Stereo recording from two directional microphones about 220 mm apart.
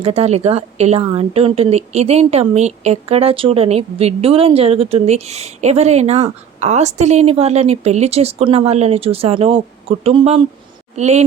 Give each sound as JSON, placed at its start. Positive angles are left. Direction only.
{"t": 0.0, "sound": "a woman's voice", "side_deg": -30}